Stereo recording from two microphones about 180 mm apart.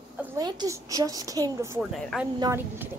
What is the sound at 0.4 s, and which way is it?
A woman's voice, 20° right (ahead or behind).